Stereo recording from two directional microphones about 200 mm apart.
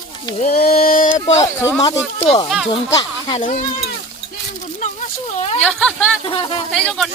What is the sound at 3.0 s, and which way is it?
Speech, 25° left (ahead or behind).